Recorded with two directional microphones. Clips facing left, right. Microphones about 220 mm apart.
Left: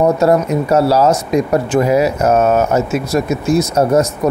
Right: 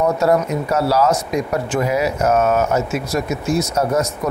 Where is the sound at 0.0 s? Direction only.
30° left (ahead or behind).